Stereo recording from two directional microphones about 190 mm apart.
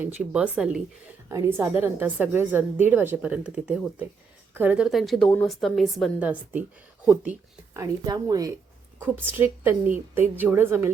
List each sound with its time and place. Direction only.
0.0 s a woman's voice: 10° right (ahead or behind)
7.7 s a woman's voice: 20° right (ahead or behind)